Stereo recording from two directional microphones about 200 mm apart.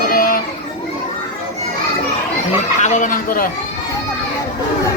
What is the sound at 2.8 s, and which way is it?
Speech, 35° left (ahead or behind).